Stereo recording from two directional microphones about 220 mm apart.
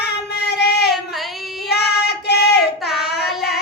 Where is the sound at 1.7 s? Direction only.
50° left (ahead or behind).